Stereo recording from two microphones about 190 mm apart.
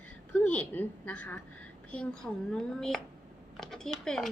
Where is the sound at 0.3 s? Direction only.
10° left (ahead or behind).